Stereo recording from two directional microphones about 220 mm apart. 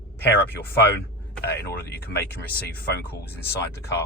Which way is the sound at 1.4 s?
45° left (ahead or behind).